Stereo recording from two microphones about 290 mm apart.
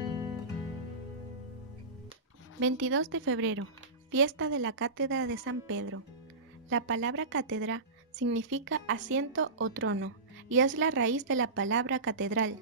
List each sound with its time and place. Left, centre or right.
2.6 s a woman's voice: right